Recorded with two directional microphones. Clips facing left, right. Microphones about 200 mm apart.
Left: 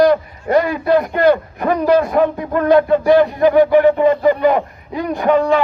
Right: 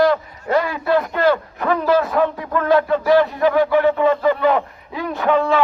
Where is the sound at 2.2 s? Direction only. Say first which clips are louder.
Left 3 dB; 45° left (ahead or behind).